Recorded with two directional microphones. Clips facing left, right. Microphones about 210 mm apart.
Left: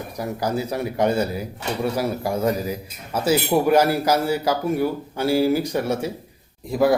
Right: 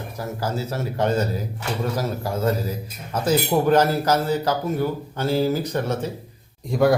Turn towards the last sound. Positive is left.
turn(degrees=0)  # may be behind; listen again after turning